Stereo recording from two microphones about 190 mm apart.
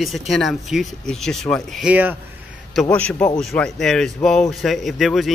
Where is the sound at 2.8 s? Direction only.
5° left (ahead or behind).